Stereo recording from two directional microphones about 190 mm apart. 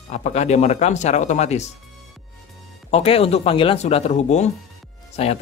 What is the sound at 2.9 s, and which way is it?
A man's voice, 30° left (ahead or behind).